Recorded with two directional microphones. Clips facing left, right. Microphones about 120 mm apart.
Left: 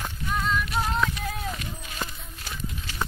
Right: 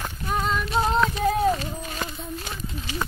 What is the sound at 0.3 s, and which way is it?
Female singing, 35° right (ahead or behind).